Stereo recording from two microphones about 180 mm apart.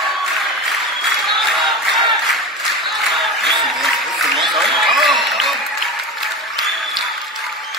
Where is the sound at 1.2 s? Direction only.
Centre (ahead or behind).